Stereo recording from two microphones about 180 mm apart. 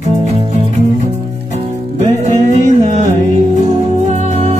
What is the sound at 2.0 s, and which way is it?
Music, 40° right (ahead or behind).